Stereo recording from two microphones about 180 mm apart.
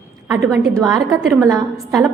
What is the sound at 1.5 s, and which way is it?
Speech, centre (ahead or behind).